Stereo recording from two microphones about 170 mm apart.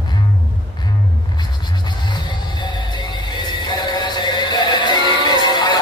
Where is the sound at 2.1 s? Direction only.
25° left (ahead or behind).